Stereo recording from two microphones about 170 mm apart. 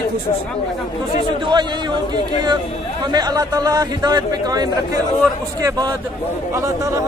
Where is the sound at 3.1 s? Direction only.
25° right (ahead or behind).